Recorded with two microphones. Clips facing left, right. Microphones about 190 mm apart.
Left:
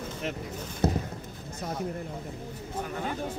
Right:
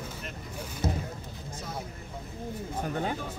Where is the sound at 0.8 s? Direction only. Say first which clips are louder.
Left 5 dB; 60° left (ahead or behind).